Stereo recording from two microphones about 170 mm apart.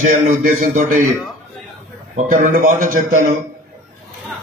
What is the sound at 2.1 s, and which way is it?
A man's voice, 45° right (ahead or behind).